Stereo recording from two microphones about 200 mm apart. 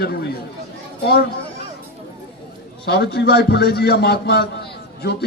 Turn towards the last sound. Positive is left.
turn(degrees=55)  # may be behind; listen again after turning